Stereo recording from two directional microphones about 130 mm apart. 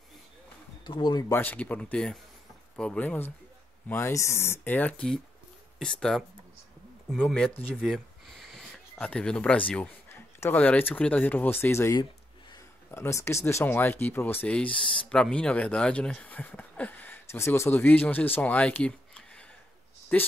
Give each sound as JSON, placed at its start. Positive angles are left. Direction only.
{"t": 0.8, "sound": "speech", "side_deg": 35}
{"t": 1.3, "sound": "speech", "side_deg": 15}
{"t": 7.2, "sound": "speech", "side_deg": 5}
{"t": 7.7, "sound": "a sound", "side_deg": 0}
{"t": 8.9, "sound": "speech", "side_deg": 10}